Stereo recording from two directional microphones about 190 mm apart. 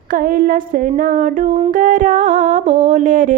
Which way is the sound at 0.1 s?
50° right (ahead or behind).